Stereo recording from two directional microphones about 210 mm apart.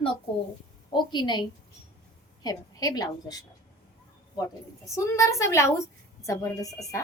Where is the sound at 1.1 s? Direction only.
20° left (ahead or behind).